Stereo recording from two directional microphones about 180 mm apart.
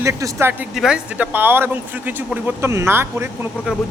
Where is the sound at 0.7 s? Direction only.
5° right (ahead or behind).